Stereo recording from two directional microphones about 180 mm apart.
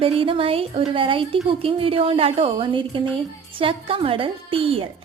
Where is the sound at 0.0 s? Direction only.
30° right (ahead or behind).